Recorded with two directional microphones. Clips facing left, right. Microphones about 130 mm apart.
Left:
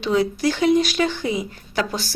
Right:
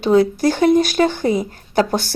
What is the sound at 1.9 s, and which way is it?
Speech, 55° right (ahead or behind).